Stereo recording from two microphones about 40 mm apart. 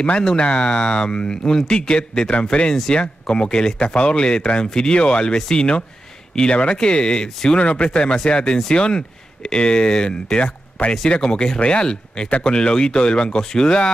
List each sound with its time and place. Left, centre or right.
0.2 s speech: left